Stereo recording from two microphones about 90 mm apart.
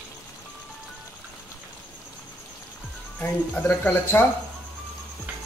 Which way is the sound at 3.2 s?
25° left (ahead or behind).